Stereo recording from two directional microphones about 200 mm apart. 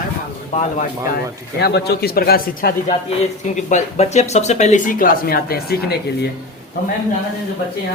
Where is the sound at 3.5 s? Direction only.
35° left (ahead or behind).